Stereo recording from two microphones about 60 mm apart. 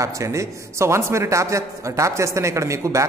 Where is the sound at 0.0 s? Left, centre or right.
Right.